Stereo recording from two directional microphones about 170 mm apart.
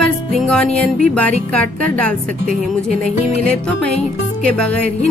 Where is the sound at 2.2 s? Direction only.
55° right (ahead or behind).